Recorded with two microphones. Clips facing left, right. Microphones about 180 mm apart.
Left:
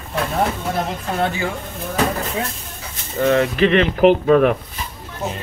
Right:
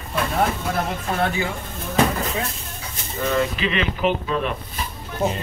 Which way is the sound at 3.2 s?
55° left (ahead or behind).